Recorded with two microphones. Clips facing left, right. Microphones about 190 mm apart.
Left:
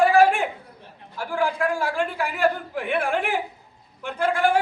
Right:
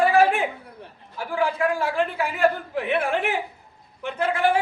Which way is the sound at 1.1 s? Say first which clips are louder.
Even; 5° right (ahead or behind).